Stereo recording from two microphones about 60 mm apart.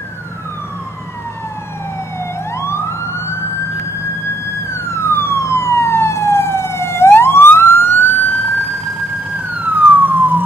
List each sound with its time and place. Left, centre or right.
2.5 s emergency vehicle: left
4.7 s emergency vehicle: left
9.6 s emergency vehicle: right